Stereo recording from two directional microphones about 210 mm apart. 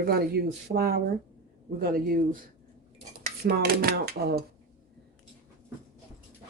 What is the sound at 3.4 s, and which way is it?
Speech, 45° right (ahead or behind).